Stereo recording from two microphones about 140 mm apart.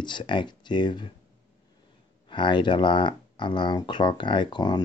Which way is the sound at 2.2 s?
35° left (ahead or behind).